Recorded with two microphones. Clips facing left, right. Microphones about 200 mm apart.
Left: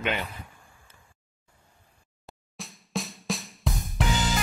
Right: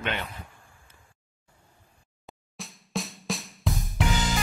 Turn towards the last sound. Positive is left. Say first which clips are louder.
# right 1 dB
turn(degrees=0)  # may be behind; listen again after turning